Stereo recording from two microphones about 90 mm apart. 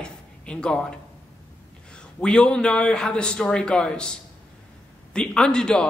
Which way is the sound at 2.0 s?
10° left (ahead or behind).